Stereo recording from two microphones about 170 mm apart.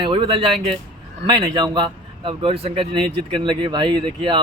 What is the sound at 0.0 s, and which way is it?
Speech, 30° right (ahead or behind).